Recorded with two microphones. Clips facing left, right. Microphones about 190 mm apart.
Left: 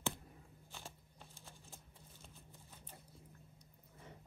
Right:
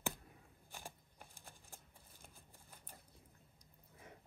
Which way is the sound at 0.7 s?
15° right (ahead or behind).